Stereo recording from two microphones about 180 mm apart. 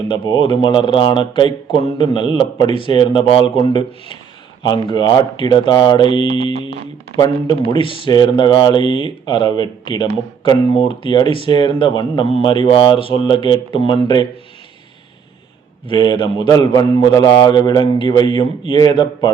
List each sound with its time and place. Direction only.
0.1 s speech: 25° left (ahead or behind)
15.9 s speech: 25° left (ahead or behind)